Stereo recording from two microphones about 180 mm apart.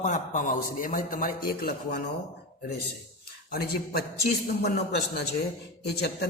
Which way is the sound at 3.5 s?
60° left (ahead or behind).